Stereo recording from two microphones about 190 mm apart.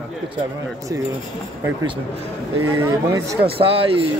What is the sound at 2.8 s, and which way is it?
Speech, 15° right (ahead or behind).